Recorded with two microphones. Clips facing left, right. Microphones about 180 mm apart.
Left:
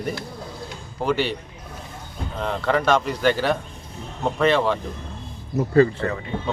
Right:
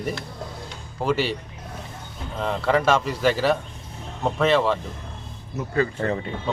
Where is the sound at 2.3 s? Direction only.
Centre (ahead or behind).